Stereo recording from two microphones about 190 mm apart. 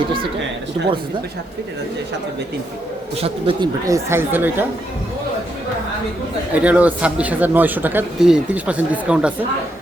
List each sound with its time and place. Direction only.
3.2 s speech: 30° right (ahead or behind); by 4.6 s 10° right (ahead or behind)
6.5 s speech: 5° right (ahead or behind)